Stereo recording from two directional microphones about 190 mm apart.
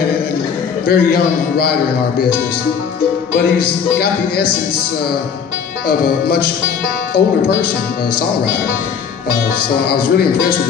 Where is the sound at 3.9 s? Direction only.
55° left (ahead or behind).